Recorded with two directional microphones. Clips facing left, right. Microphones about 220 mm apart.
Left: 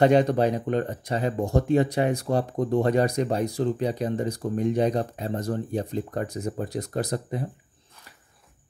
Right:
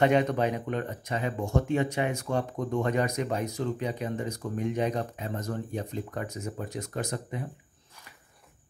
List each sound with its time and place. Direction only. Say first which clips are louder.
0.0 s speech: left 5 dB; 35° left (ahead or behind)